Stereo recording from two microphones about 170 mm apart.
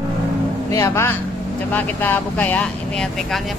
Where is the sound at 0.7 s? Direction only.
15° left (ahead or behind).